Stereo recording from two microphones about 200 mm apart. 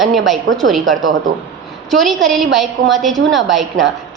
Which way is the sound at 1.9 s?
Centre (ahead or behind).